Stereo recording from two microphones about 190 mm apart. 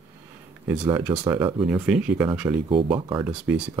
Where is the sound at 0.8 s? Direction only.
15° right (ahead or behind).